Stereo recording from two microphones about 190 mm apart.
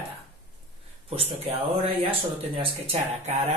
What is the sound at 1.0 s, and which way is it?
Speech, 30° right (ahead or behind).